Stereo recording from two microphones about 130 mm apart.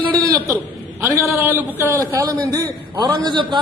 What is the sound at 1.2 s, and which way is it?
A man's voice, 20° right (ahead or behind).